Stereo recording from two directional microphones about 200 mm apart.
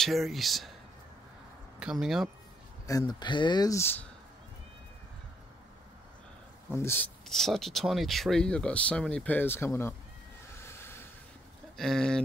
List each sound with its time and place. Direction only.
0.0 s speech: centre (ahead or behind)
1.8 s speech: centre (ahead or behind)
2.9 s speech: 20° left (ahead or behind)
6.7 s speech: 10° left (ahead or behind)
10.6 s a sound: 10° left (ahead or behind)
11.7 s speech: centre (ahead or behind)